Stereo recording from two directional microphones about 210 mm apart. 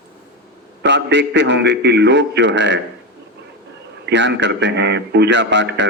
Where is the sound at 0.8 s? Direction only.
55° right (ahead or behind).